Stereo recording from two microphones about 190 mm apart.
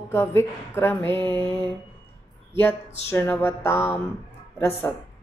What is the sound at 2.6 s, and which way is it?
Mantra, 10° left (ahead or behind).